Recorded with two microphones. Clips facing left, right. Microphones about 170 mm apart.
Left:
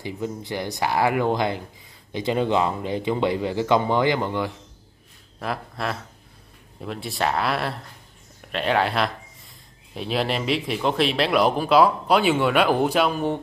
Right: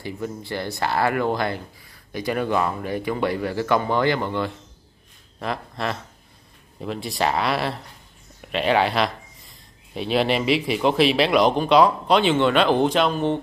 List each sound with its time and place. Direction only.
0.0 s speech: 15° left (ahead or behind)
5.4 s speech: centre (ahead or behind)